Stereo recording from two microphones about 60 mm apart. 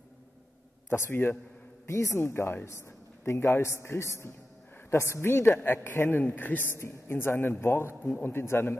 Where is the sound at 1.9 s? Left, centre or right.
Left.